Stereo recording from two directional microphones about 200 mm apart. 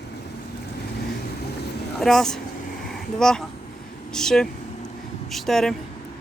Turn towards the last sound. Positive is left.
turn(degrees=0)  # may be behind; listen again after turning